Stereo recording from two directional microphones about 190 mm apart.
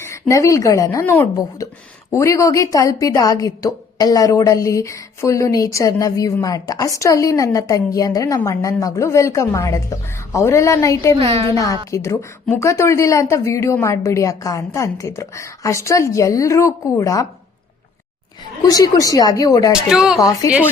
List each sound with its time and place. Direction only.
0.0 s a woman's voice: 15° left (ahead or behind)
11.1 s a woman's voice: 30° right (ahead or behind)
11.9 s a woman's voice: 15° left (ahead or behind)
18.6 s speech: 20° left (ahead or behind)
19.7 s speech: 5° right (ahead or behind)
20.1 s speech: 20° left (ahead or behind)